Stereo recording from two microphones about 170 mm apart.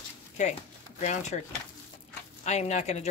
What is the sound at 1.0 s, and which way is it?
Speech, 45° left (ahead or behind).